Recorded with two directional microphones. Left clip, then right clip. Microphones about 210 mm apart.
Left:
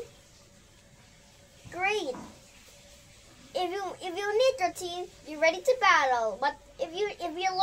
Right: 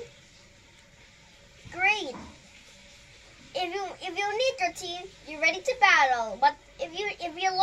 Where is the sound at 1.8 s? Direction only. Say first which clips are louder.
Right 4 dB; 25° left (ahead or behind).